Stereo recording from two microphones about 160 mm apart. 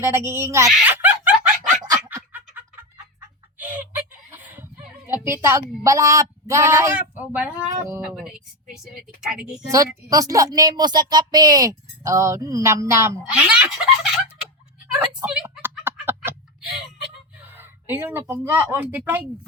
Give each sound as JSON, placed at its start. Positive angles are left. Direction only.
{"t": 0.0, "sound": "giggle", "side_deg": -15}
{"t": 4.3, "sound": "a sound", "side_deg": -15}
{"t": 5.0, "sound": "a woman's voice", "side_deg": -15}
{"t": 8.1, "sound": "speech", "side_deg": 0}
{"t": 9.6, "sound": "speech", "side_deg": -20}
{"t": 14.9, "sound": "speech", "side_deg": -10}
{"t": 15.8, "sound": "a sound", "side_deg": -15}
{"t": 17.5, "sound": "speech", "side_deg": -15}